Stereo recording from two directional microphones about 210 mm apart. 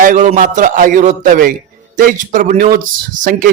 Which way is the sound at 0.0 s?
35° right (ahead or behind).